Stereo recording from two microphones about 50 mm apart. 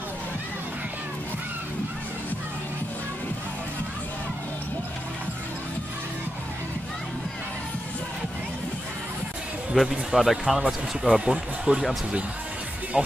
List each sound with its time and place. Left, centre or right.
10.1 s speech: centre
11.1 s speech: centre
12.9 s speech: centre